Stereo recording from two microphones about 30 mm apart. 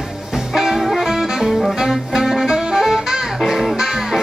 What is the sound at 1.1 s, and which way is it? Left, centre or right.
Music, centre.